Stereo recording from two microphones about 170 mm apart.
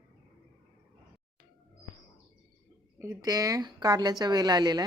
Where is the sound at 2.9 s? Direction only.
20° right (ahead or behind).